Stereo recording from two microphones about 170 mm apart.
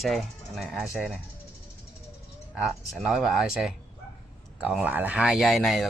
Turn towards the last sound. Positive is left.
turn(degrees=0)  # may be behind; listen again after turning